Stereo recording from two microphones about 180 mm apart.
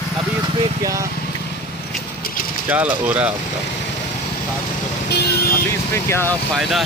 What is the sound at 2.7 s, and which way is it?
Speech, 10° right (ahead or behind).